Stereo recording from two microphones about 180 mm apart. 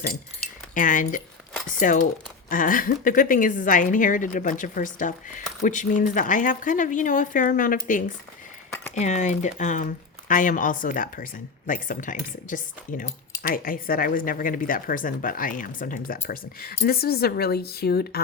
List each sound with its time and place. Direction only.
0.7 s a woman's voice: 45° left (ahead or behind)
9.0 s a woman's voice: 40° left (ahead or behind); by 18.2 s 60° left (ahead or behind)